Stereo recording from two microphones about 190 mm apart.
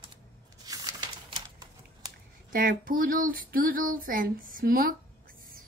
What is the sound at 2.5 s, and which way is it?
A woman's voice, 50° right (ahead or behind).